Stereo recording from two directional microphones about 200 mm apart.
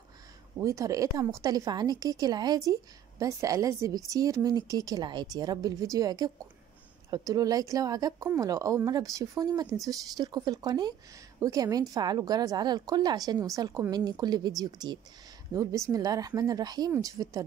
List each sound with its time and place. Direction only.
0.6 s a woman's voice: 15° right (ahead or behind)